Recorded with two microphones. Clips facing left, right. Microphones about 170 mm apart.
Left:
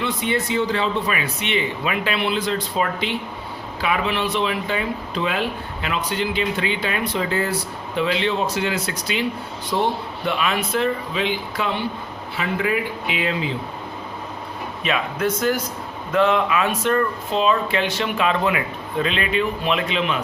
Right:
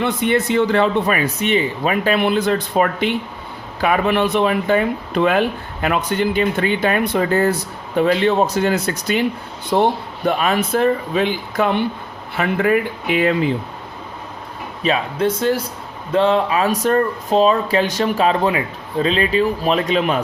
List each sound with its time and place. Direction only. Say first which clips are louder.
0.0 s speech: right 5 dB; 55° right (ahead or behind)
14.8 s speech: right 4 dB; 30° right (ahead or behind)